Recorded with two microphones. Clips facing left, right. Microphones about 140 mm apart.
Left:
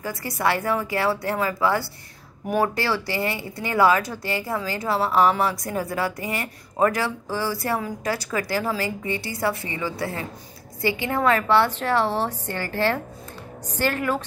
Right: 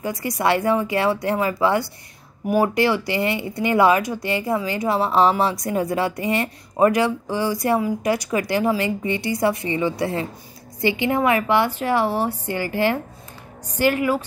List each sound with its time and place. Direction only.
0.0 s a woman's voice: 20° right (ahead or behind)